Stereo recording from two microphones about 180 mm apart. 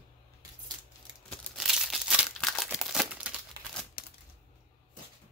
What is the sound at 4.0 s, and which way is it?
Typewriter, 60° left (ahead or behind).